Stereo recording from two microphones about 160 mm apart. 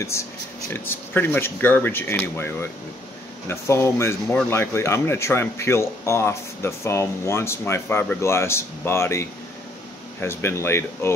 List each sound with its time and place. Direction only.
0.7 s speech: 15° left (ahead or behind)